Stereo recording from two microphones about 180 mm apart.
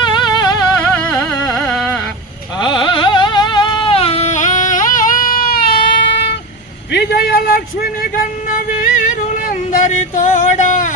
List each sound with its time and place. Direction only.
0.0 s vehicle: 25° left (ahead or behind)
0.9 s carnatic music: 10° left (ahead or behind)
2.6 s a sound: 25° left (ahead or behind); by 8.2 s 55° left (ahead or behind)
8.8 s music: 45° left (ahead or behind)